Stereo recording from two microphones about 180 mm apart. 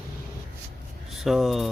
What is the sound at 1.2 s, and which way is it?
Speech, centre (ahead or behind).